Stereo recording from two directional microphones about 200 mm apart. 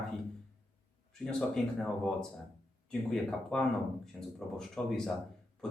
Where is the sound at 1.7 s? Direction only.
5° left (ahead or behind).